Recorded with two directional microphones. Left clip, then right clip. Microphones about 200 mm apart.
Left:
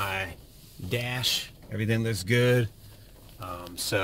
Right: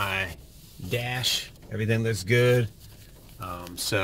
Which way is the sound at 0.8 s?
40° left (ahead or behind).